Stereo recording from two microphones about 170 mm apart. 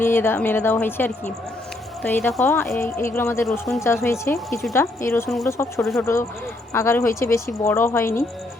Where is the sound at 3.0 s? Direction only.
15° left (ahead or behind).